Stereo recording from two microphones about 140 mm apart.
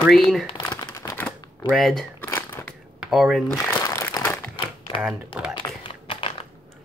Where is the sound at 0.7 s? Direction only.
25° left (ahead or behind).